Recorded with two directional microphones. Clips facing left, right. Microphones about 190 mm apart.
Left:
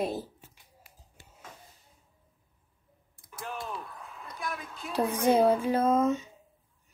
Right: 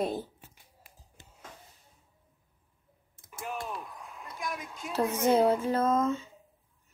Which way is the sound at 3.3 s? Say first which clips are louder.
Right 1 dB; 10° right (ahead or behind).